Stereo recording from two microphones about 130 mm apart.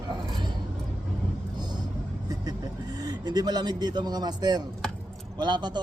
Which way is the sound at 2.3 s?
30° right (ahead or behind).